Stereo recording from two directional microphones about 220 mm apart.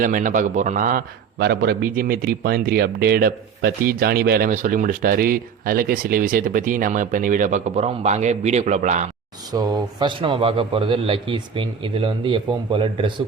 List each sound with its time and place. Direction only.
0.0 s a man's voice: 35° right (ahead or behind)
9.5 s a man's voice: 20° right (ahead or behind)